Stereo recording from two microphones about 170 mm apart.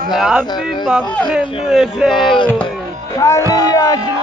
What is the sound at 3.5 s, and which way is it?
Music, 20° left (ahead or behind).